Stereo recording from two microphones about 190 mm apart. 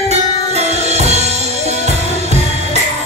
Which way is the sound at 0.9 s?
35° right (ahead or behind).